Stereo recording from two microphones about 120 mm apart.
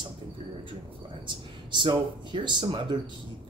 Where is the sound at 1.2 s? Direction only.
40° right (ahead or behind).